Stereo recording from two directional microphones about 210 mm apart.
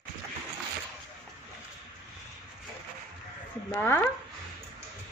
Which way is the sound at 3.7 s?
10° left (ahead or behind).